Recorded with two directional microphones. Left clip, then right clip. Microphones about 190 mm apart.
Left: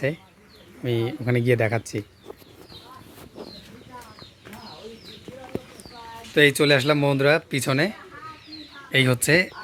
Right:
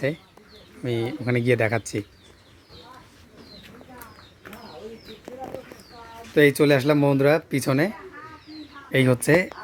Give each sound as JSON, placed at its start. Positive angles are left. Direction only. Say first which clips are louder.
{"t": 0.8, "sound": "speech", "louder": "left 1 dB", "side_deg": 5}
{"t": 6.3, "sound": "speech", "louder": "even", "side_deg": -10}